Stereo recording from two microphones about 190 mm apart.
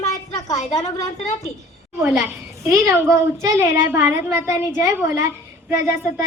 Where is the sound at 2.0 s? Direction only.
Centre (ahead or behind).